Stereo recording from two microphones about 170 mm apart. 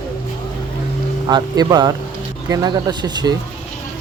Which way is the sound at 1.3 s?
25° right (ahead or behind).